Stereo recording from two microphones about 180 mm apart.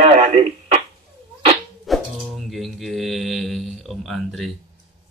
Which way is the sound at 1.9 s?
Centre (ahead or behind).